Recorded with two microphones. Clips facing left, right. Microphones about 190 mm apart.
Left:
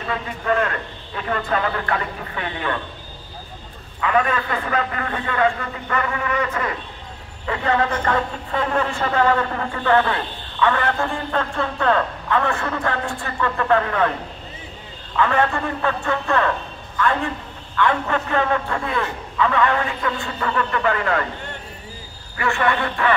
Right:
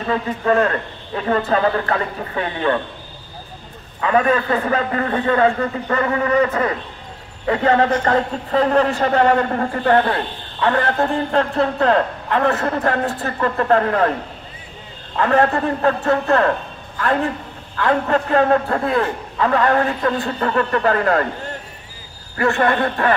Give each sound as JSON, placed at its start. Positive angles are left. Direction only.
{"t": 0.1, "sound": "speech", "side_deg": -35}
{"t": 4.0, "sound": "speech", "side_deg": -35}
{"t": 15.1, "sound": "speech", "side_deg": -40}
{"t": 22.4, "sound": "speech", "side_deg": -40}